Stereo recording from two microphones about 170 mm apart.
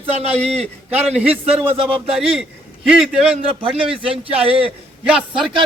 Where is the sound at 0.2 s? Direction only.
40° right (ahead or behind).